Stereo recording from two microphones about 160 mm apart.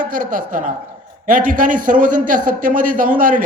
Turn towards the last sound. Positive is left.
turn(degrees=-55)  # may be behind; listen again after turning